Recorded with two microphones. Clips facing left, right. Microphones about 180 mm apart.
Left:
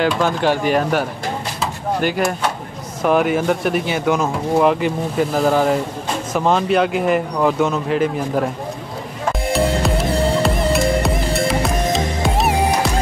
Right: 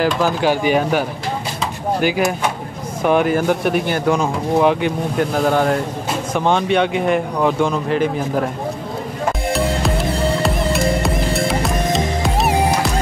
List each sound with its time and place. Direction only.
0.0 s speech: centre (ahead or behind)
9.5 s music: centre (ahead or behind)